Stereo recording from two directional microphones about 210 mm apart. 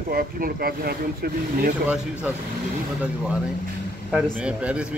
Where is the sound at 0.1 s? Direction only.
45° right (ahead or behind).